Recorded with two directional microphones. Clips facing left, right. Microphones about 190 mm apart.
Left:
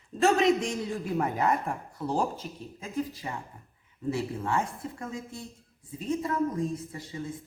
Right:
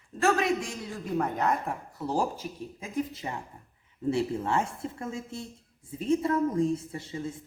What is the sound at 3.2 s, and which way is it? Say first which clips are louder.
A woman's voice: right 1 dB; 25° right (ahead or behind).